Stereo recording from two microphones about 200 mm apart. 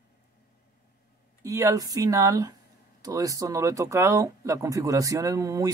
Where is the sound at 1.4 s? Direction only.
15° right (ahead or behind).